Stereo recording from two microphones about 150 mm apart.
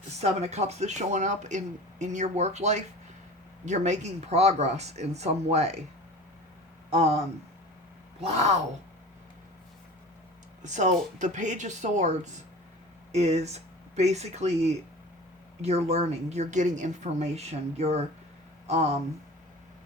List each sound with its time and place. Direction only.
0.2 s speech: 45° right (ahead or behind)
8.2 s speech: 45° right (ahead or behind)
10.6 s speech: 55° right (ahead or behind)